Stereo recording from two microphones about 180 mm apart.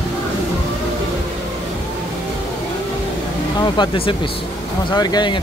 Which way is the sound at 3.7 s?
25° left (ahead or behind).